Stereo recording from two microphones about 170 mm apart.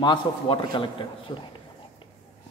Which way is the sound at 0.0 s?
25° left (ahead or behind).